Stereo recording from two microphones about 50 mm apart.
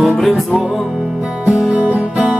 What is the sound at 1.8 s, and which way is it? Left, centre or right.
Music, right.